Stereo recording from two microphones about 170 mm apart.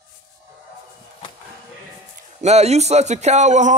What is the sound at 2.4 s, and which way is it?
Speech, 40° right (ahead or behind).